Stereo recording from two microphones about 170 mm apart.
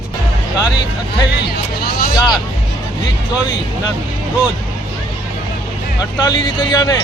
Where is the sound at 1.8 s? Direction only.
60° left (ahead or behind).